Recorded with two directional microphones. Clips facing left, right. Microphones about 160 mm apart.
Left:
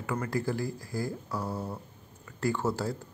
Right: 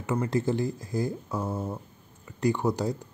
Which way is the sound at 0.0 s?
20° right (ahead or behind).